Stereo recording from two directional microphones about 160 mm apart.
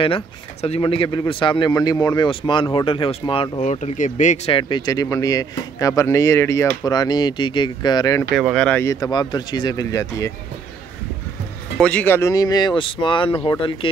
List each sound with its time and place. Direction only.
0.0 s speech: 35° left (ahead or behind)
3.6 s speech: 45° left (ahead or behind)
4.5 s speech: 30° left (ahead or behind)
8.3 s speech: centre (ahead or behind)
8.8 s speech: 25° left (ahead or behind)
11.8 s speech: 10° left (ahead or behind); by 13.8 s 30° left (ahead or behind)